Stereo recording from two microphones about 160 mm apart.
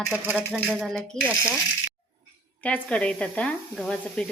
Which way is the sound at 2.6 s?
10° left (ahead or behind).